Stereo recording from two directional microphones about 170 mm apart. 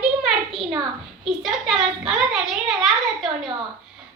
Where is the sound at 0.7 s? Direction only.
25° right (ahead or behind).